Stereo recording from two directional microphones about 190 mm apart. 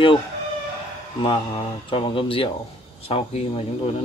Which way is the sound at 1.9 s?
25° left (ahead or behind).